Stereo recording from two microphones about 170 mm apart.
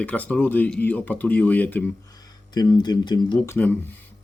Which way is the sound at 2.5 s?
25° left (ahead or behind).